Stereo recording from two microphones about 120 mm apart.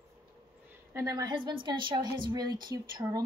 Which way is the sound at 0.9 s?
30° right (ahead or behind).